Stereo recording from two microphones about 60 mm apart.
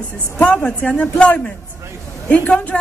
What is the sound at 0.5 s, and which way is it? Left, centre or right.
A man's voice, left.